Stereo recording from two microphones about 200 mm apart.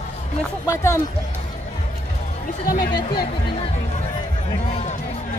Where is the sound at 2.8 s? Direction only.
20° left (ahead or behind).